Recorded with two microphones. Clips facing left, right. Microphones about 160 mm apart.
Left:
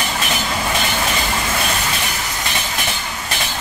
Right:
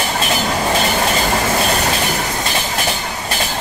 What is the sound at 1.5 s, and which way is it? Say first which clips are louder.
Train: right 5 dB; 45° right (ahead or behind).